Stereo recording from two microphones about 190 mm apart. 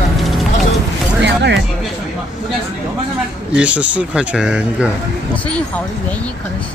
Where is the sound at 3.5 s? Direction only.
5° right (ahead or behind).